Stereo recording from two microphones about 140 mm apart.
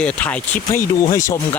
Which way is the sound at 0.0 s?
10° left (ahead or behind).